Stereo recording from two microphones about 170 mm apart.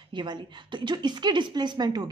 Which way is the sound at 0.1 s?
25° right (ahead or behind).